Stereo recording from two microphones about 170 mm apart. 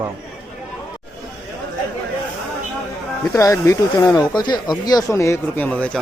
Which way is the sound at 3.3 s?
20° left (ahead or behind).